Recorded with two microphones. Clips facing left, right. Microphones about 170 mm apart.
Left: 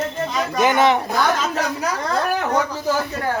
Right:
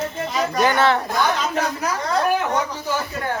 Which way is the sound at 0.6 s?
15° left (ahead or behind).